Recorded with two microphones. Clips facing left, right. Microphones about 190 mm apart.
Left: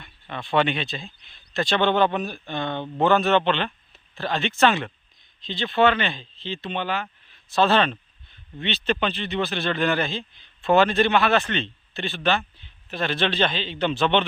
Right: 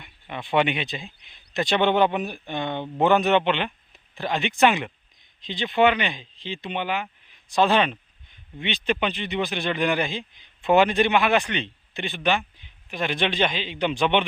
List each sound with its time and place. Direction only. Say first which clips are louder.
0.0 s speech: even; 15° right (ahead or behind)